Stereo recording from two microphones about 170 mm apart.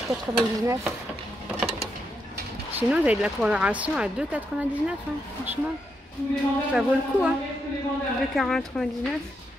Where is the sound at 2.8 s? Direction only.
10° right (ahead or behind).